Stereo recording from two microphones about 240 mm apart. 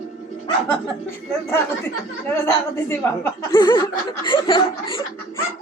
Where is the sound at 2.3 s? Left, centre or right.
Centre.